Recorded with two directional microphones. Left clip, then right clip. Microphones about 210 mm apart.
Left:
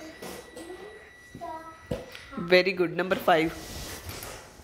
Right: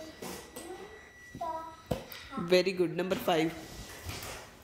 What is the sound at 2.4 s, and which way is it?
Speech, 20° right (ahead or behind).